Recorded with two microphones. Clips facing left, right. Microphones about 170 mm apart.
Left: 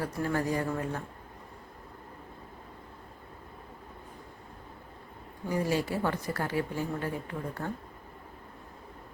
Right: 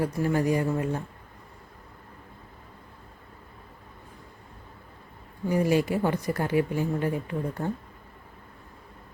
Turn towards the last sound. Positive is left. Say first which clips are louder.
# right 5 dB
turn(degrees=-20)  # may be behind; listen again after turning